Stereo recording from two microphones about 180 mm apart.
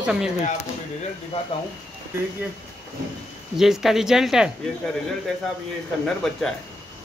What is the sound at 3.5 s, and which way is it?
Speech, centre (ahead or behind).